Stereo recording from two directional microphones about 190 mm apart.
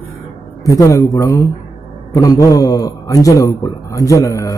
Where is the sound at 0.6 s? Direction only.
15° left (ahead or behind).